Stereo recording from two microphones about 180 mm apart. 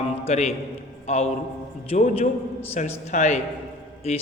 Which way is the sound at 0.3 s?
35° left (ahead or behind).